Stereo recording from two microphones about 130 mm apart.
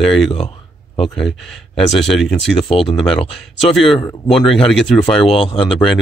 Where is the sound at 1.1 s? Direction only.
5° left (ahead or behind).